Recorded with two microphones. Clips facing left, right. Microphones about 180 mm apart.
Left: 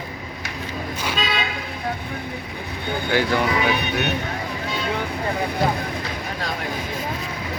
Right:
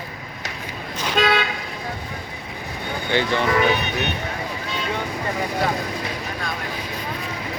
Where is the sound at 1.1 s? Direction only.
65° right (ahead or behind).